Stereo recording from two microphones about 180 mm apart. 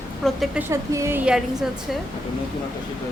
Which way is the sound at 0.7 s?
15° right (ahead or behind).